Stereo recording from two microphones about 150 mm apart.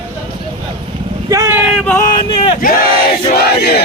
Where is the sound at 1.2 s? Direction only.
20° right (ahead or behind).